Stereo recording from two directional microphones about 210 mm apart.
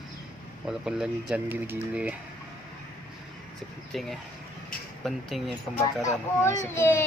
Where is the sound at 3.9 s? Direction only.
Centre (ahead or behind).